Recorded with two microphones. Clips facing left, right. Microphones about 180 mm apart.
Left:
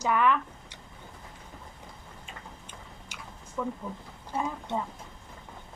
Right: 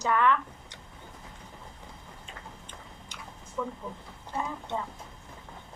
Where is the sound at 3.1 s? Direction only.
10° left (ahead or behind).